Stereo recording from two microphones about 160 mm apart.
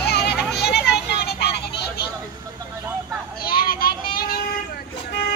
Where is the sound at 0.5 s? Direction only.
90° left.